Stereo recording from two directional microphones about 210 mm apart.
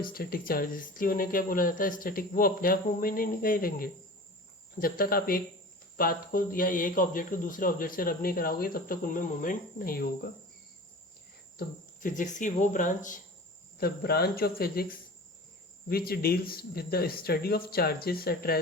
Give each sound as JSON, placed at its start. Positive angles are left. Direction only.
{"t": 0.0, "sound": "speech", "side_deg": 45}
{"t": 11.5, "sound": "speech", "side_deg": 40}
{"t": 13.7, "sound": "speech", "side_deg": 45}
{"t": 15.9, "sound": "speech", "side_deg": 45}